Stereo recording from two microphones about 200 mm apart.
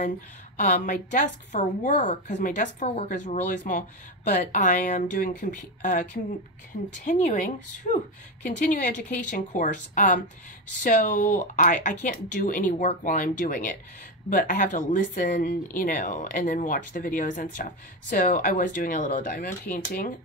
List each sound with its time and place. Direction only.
0.6 s a woman's voice: 40° left (ahead or behind)